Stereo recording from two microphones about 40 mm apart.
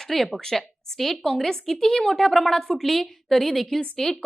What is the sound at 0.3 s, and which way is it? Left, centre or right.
A woman's voice, centre.